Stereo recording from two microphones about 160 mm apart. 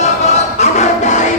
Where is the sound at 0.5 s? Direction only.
45° left (ahead or behind).